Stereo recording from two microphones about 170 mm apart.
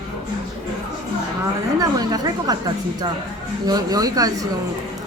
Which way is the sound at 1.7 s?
20° right (ahead or behind).